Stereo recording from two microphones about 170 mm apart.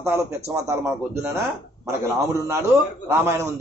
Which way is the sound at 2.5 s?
15° right (ahead or behind).